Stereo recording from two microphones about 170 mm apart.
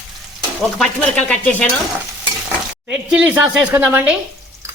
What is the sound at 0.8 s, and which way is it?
Speech, 5° left (ahead or behind).